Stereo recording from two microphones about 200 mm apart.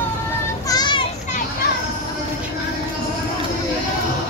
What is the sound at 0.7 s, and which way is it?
Children playing, 20° left (ahead or behind).